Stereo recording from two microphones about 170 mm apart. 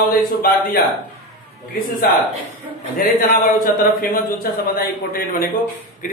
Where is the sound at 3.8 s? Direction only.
55° left (ahead or behind).